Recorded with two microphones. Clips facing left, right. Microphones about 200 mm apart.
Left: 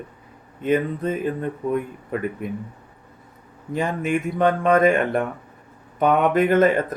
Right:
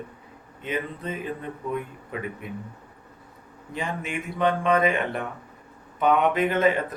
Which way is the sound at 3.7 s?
45° left (ahead or behind).